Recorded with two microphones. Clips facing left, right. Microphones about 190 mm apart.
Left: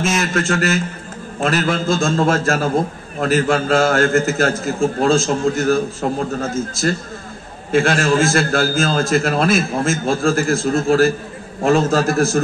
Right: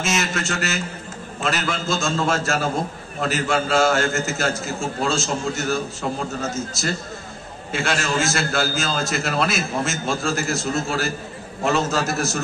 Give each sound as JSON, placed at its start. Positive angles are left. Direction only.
{"t": 0.0, "sound": "a man's voice", "side_deg": 55}